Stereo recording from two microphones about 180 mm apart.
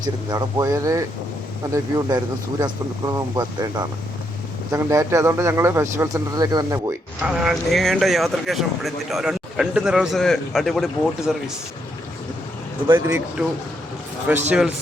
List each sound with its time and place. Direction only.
0.0 s speech: 20° right (ahead or behind)
7.3 s speech: 5° right (ahead or behind)
12.9 s speech: 15° right (ahead or behind)
14.3 s speech: 10° right (ahead or behind)